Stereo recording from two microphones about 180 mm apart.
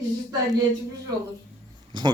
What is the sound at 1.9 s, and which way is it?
Speech, 25° right (ahead or behind).